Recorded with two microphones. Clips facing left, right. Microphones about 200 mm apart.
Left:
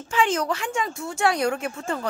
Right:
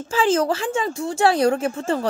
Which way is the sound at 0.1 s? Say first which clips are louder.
Right 4 dB; 35° right (ahead or behind).